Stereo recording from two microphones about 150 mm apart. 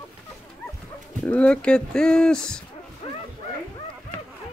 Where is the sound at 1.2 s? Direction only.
10° left (ahead or behind).